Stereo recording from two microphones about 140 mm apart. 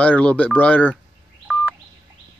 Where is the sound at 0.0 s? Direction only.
10° left (ahead or behind).